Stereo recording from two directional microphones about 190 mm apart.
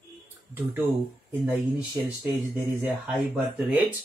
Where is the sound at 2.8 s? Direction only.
10° right (ahead or behind).